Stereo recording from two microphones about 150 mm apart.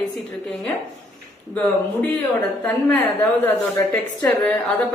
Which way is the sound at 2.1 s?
10° left (ahead or behind).